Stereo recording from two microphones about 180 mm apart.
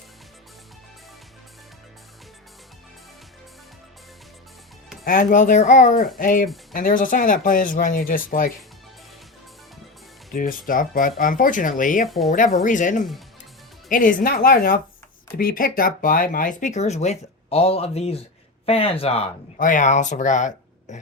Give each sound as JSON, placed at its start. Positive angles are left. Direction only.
{"t": 5.0, "sound": "speech", "side_deg": 50}
{"t": 10.3, "sound": "speech", "side_deg": 50}
{"t": 12.0, "sound": "speech", "side_deg": 0}
{"t": 12.3, "sound": "speech", "side_deg": 45}
{"t": 19.5, "sound": "speech", "side_deg": 45}